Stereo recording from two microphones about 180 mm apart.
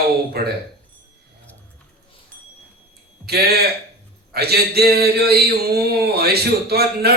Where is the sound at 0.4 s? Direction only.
60° right (ahead or behind).